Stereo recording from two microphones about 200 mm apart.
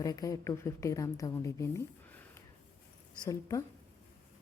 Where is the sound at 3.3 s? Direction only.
15° left (ahead or behind).